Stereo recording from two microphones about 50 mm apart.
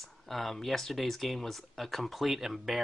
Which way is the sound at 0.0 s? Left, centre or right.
Centre.